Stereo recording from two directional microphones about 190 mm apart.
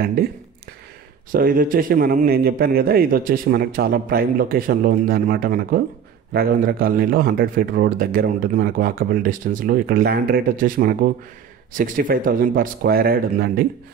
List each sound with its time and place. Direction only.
1.3 s a man's voice: 50° right (ahead or behind)